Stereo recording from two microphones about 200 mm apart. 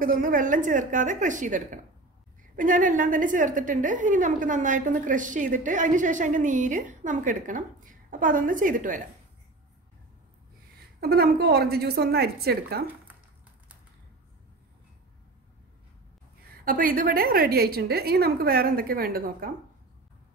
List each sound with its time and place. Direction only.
0.0 s a woman's voice: 45° right (ahead or behind)
11.0 s a woman's voice: 50° right (ahead or behind)
16.4 s a woman's voice: 45° right (ahead or behind)